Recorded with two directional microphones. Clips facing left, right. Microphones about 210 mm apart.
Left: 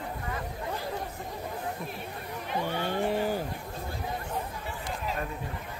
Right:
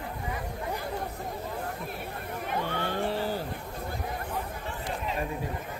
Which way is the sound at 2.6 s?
15° left (ahead or behind).